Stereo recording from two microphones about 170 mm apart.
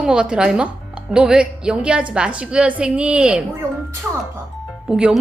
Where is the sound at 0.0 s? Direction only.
5° right (ahead or behind).